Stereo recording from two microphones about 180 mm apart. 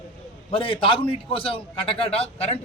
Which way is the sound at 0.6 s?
30° left (ahead or behind).